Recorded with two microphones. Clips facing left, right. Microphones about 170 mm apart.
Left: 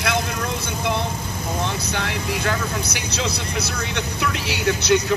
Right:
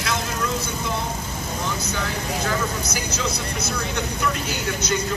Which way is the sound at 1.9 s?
70° left (ahead or behind).